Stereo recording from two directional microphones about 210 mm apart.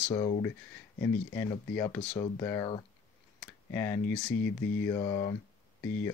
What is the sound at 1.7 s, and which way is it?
Speech, 10° left (ahead or behind).